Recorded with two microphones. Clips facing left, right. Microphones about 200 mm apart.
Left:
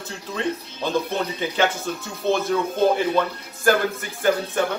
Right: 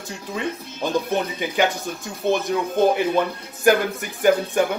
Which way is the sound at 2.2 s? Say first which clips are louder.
Right 1 dB; 55° right (ahead or behind).